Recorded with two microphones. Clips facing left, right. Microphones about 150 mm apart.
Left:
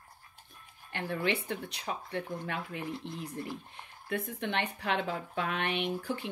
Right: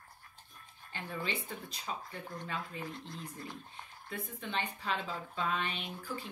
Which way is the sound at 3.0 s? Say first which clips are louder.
Left 5 dB; 20° left (ahead or behind).